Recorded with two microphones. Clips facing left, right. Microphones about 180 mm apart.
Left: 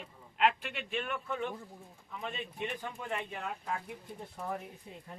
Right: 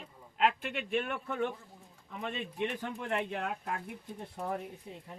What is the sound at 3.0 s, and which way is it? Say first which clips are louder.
Speech: right 6 dB; 65° right (ahead or behind).